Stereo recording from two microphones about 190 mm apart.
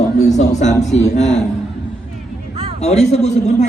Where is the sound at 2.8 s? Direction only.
35° left (ahead or behind).